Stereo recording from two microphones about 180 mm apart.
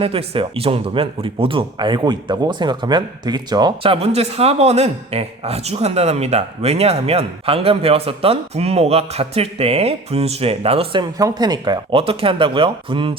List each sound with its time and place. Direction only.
0.0 s speech: 30° right (ahead or behind)
3.9 s speech: 35° right (ahead or behind)